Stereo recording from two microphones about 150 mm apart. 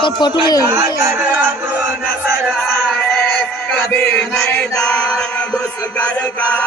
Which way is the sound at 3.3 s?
10° left (ahead or behind).